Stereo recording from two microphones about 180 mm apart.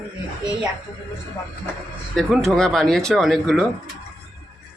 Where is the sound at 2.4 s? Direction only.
Centre (ahead or behind).